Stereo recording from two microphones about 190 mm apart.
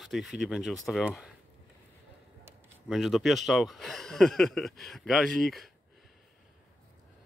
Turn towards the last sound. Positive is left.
turn(degrees=0)  # may be behind; listen again after turning